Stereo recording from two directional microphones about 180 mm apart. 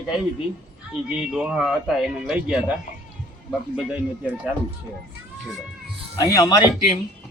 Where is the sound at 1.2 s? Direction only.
5° right (ahead or behind).